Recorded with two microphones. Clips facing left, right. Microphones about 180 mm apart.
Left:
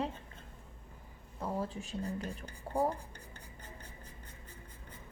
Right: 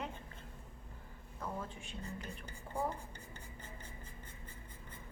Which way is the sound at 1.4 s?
35° left (ahead or behind).